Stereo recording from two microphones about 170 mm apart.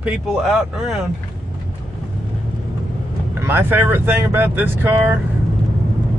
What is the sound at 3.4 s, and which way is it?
Speech, 15° right (ahead or behind).